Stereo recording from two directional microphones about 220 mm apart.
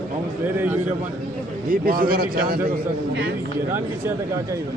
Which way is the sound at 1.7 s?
40° right (ahead or behind).